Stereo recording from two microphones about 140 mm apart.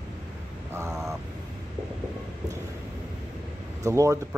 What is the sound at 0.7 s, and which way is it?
Speech, 20° right (ahead or behind).